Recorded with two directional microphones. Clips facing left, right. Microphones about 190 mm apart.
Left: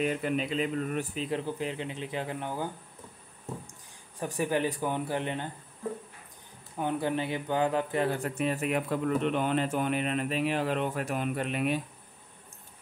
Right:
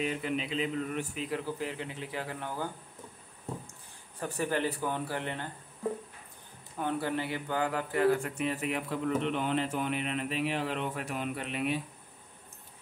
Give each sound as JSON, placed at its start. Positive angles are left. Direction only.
{"t": 0.0, "sound": "a man's voice", "side_deg": 50}
{"t": 1.1, "sound": "speech", "side_deg": 25}
{"t": 4.2, "sound": "speech", "side_deg": 15}
{"t": 6.8, "sound": "speech", "side_deg": 15}
{"t": 8.2, "sound": "a man's voice", "side_deg": 45}